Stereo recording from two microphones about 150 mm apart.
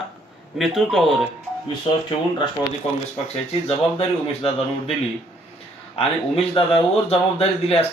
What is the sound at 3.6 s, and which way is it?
Speech, 40° left (ahead or behind).